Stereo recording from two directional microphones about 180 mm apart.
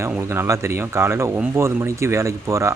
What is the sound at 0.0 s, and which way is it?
Speech, 15° right (ahead or behind).